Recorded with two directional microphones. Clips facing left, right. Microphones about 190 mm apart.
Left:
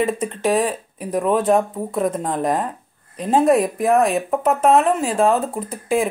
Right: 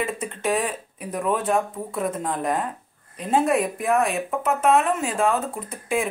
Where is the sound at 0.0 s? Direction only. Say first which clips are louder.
Left 6 dB; 35° left (ahead or behind).